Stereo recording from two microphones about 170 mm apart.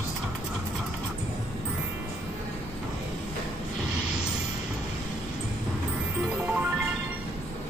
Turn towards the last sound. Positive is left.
turn(degrees=-10)  # may be behind; listen again after turning